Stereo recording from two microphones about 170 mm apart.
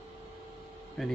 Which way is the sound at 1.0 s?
Centre (ahead or behind).